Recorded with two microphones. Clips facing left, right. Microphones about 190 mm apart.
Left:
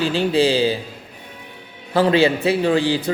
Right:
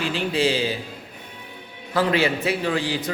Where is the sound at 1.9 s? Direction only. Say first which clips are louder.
Left 5 dB; 30° left (ahead or behind).